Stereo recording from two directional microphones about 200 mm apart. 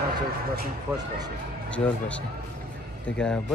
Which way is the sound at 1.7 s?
5° left (ahead or behind).